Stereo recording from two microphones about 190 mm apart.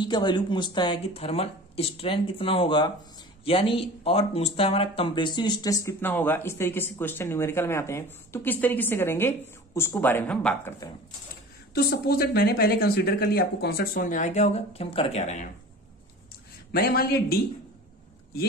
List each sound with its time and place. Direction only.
0.0 s speech: 25° left (ahead or behind); by 10.7 s 5° left (ahead or behind)
11.7 s speech: 55° left (ahead or behind); by 15.5 s 35° left (ahead or behind)
16.7 s a man's voice: 55° left (ahead or behind)